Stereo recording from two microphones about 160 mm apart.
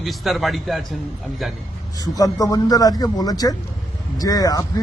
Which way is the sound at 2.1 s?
20° left (ahead or behind).